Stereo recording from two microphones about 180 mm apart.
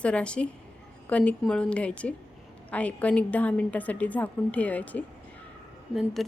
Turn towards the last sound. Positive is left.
turn(degrees=0)  # may be behind; listen again after turning